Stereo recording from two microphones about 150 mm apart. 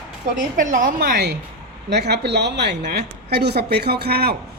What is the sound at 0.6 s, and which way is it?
A woman's voice, 60° right (ahead or behind).